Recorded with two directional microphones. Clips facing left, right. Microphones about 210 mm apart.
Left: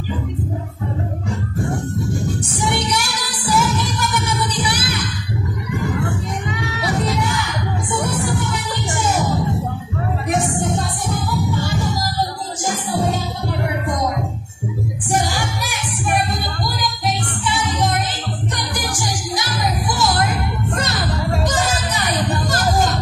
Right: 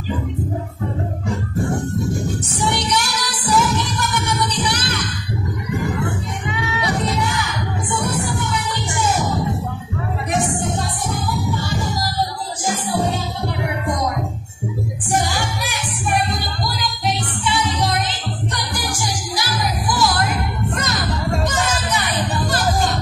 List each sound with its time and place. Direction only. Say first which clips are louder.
2.5 s music: right 1 dB; 10° left (ahead or behind)
6.4 s music: even; 40° left (ahead or behind)
17.6 s music: left 1 dB; 50° left (ahead or behind)
19.3 s music: left 1 dB; 25° left (ahead or behind); by 22.9 s 45° left (ahead or behind)